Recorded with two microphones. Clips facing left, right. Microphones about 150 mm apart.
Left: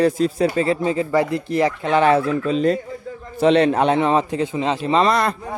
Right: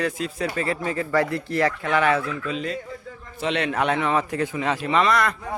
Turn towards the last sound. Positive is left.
turn(degrees=30)  # may be behind; listen again after turning